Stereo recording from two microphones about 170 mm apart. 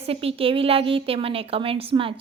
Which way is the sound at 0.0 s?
35° right (ahead or behind).